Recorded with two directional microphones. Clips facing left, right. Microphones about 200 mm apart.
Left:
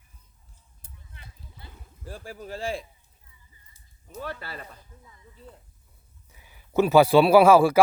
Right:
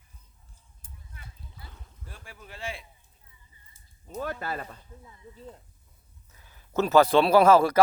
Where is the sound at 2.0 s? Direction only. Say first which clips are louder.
Left 11 dB; 35° left (ahead or behind).